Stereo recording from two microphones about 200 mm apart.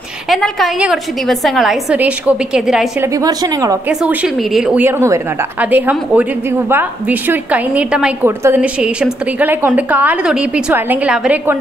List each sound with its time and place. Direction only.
0.3 s a woman's voice: centre (ahead or behind)
3.2 s speech: 20° right (ahead or behind)
4.0 s a woman's voice: 5° right (ahead or behind)